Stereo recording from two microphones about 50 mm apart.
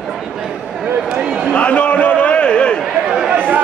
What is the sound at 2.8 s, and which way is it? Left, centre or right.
Chatter, centre.